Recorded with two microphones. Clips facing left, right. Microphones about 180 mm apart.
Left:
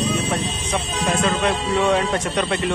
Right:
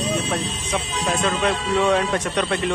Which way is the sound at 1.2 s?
Centre (ahead or behind).